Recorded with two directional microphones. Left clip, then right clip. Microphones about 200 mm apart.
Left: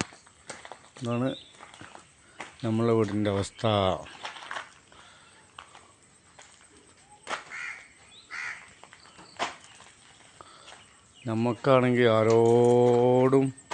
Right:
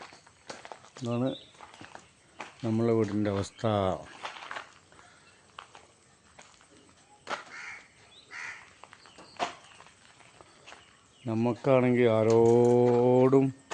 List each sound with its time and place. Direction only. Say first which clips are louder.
1.0 s speech: left 2 dB; 10° left (ahead or behind)
1.9 s a sound: even; 35° left (ahead or behind)
2.6 s speech: left 2 dB; 5° left (ahead or behind)
4.2 s boiling: left 2 dB; 50° left (ahead or behind)
7.3 s crow: left 2 dB; 60° left (ahead or behind)
9.4 s a sound: left 1 dB; 60° left (ahead or behind)
11.3 s speech: left 2 dB; centre (ahead or behind)